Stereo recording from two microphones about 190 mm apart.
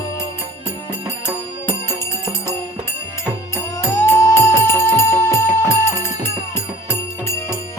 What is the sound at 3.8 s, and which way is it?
Music, 15° left (ahead or behind).